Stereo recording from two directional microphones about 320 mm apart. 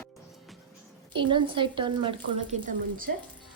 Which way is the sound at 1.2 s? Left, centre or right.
Centre.